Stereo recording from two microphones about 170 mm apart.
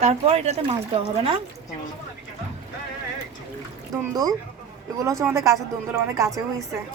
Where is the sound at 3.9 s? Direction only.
20° right (ahead or behind).